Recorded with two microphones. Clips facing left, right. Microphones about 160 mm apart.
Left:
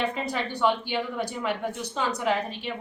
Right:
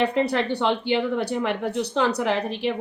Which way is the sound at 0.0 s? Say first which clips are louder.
Right 7 dB; 70° right (ahead or behind).